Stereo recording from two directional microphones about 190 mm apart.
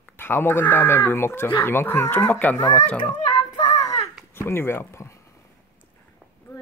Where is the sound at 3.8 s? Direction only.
20° left (ahead or behind).